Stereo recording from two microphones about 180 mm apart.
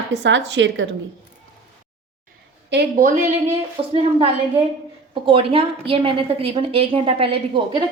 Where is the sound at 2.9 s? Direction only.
50° right (ahead or behind).